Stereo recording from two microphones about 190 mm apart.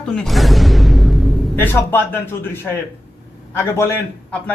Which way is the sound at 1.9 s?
10° left (ahead or behind).